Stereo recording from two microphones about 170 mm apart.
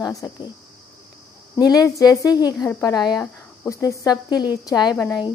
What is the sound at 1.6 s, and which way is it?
A woman's voice, 20° left (ahead or behind).